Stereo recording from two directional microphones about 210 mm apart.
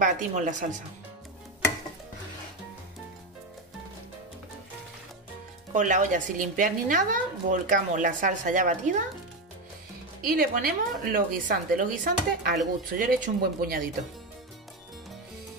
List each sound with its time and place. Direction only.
0.0 s a woman's voice: 35° right (ahead or behind)
5.7 s a woman's voice: 35° right (ahead or behind)
10.2 s a woman's voice: 45° right (ahead or behind)